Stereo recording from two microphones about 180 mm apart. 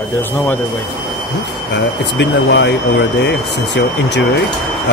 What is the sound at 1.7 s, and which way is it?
Mantra, 70° left (ahead or behind).